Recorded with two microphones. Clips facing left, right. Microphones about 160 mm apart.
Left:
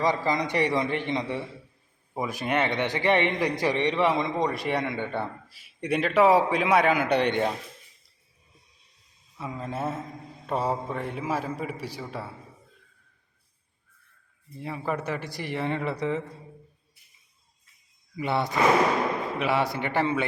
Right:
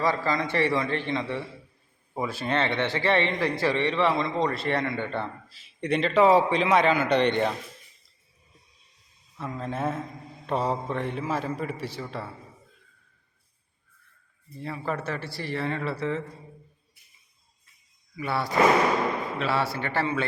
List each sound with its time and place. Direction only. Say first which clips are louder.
0.0 s a man's voice: left 1 dB; 20° left (ahead or behind)
9.4 s a man's voice: right 1 dB; 5° left (ahead or behind)
14.6 s a man's voice: left 1 dB; 15° left (ahead or behind)
18.2 s a man's voice: right 1 dB; 20° left (ahead or behind)